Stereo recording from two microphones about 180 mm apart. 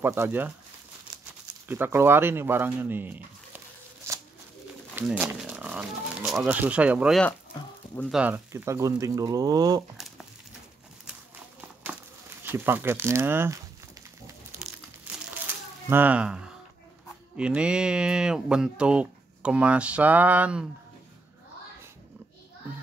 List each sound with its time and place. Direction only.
0.0 s speech: 15° right (ahead or behind)
1.7 s speech: 15° right (ahead or behind)
4.9 s speech: 10° right (ahead or behind)
9.9 s crumpling: centre (ahead or behind)
12.4 s speech: 10° right (ahead or behind)
14.6 s crumpling: 5° right (ahead or behind)
15.9 s speech: 10° right (ahead or behind)